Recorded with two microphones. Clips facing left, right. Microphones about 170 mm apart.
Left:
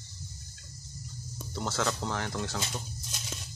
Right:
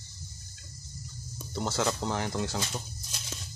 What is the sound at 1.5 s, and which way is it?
Speech, 10° right (ahead or behind).